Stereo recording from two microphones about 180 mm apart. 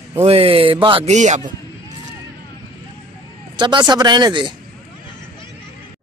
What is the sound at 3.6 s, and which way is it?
Speech, 25° right (ahead or behind).